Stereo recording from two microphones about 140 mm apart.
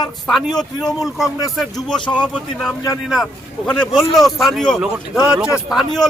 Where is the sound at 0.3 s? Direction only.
Centre (ahead or behind).